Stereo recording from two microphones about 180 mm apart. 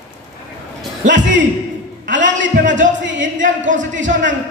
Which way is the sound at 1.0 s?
90° right.